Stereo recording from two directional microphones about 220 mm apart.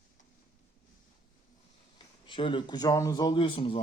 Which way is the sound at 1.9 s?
20° left (ahead or behind).